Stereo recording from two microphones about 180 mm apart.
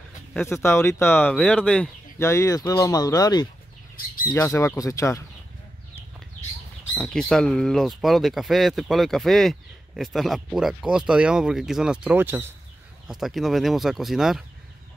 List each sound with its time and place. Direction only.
0.3 s speech: 10° left (ahead or behind)
7.0 s speech: centre (ahead or behind)
13.1 s speech: centre (ahead or behind)